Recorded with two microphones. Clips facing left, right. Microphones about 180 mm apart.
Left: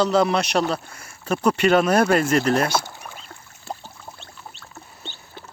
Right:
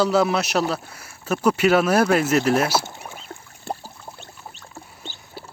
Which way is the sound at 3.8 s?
10° right (ahead or behind).